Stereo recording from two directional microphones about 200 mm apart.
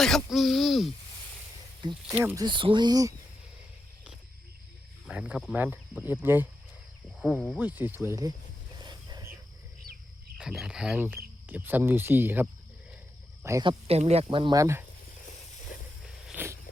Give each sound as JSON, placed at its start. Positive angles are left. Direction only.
{"t": 0.0, "sound": "speech", "side_deg": 0}
{"t": 2.0, "sound": "speech", "side_deg": -15}
{"t": 2.4, "sound": "speech", "side_deg": -25}
{"t": 5.0, "sound": "speech", "side_deg": -5}
{"t": 7.2, "sound": "speech", "side_deg": 5}
{"t": 7.6, "sound": "speech", "side_deg": -10}
{"t": 8.8, "sound": "wild animals", "side_deg": -20}
{"t": 10.3, "sound": "speech", "side_deg": -5}
{"t": 16.2, "sound": "a sound", "side_deg": -10}